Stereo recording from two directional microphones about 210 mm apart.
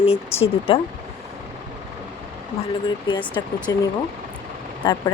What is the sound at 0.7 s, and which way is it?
Speech, 25° left (ahead or behind).